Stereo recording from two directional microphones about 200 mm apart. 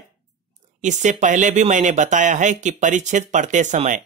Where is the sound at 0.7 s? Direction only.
35° right (ahead or behind).